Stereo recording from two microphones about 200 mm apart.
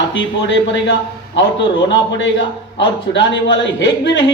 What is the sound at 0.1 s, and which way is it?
A man's voice, 65° left (ahead or behind).